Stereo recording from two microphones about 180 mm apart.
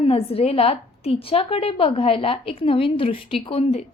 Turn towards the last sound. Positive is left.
turn(degrees=35)  # may be behind; listen again after turning